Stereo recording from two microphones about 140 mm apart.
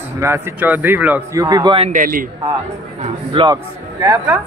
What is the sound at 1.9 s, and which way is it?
Speech, 85° right.